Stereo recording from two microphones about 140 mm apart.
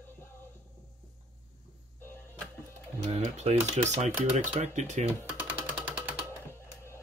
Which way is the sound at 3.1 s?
50° right (ahead or behind).